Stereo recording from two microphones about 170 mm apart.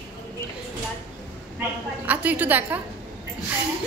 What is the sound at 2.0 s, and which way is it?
Speech, 10° right (ahead or behind).